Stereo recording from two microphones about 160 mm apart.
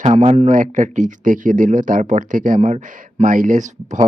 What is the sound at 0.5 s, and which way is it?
Speech, 50° right (ahead or behind).